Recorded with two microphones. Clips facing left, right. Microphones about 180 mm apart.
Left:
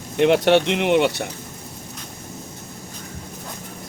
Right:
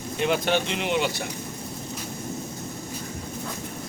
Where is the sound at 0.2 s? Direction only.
70° left (ahead or behind).